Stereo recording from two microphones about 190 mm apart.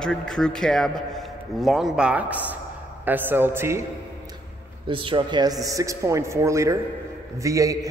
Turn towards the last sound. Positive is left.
turn(degrees=-15)  # may be behind; listen again after turning